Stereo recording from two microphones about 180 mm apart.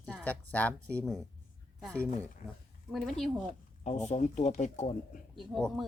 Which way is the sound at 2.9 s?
Centre (ahead or behind).